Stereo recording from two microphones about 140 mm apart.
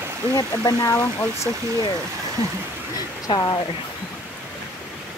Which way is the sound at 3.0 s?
25° left (ahead or behind).